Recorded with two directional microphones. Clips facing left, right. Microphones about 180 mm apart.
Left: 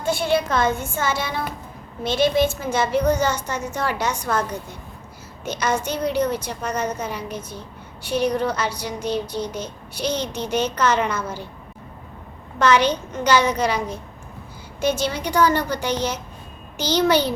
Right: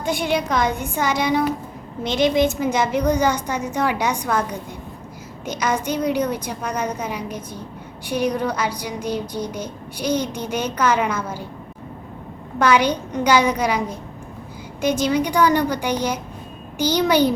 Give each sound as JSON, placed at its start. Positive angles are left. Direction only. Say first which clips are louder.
{"t": 0.0, "sound": "speech", "louder": "left 1 dB", "side_deg": -15}
{"t": 12.5, "sound": "speech", "louder": "even", "side_deg": -10}